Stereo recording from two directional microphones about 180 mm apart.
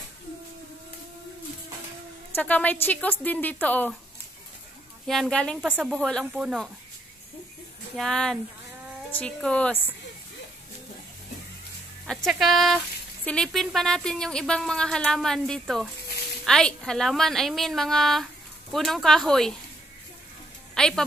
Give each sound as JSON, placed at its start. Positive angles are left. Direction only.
{"t": 2.3, "sound": "speech", "side_deg": 10}
{"t": 5.0, "sound": "speech", "side_deg": 0}
{"t": 7.9, "sound": "speech", "side_deg": 0}
{"t": 12.3, "sound": "speech", "side_deg": 0}
{"t": 20.7, "sound": "music", "side_deg": 5}